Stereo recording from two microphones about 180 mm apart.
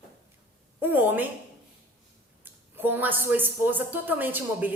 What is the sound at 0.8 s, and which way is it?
Speech, 10° right (ahead or behind).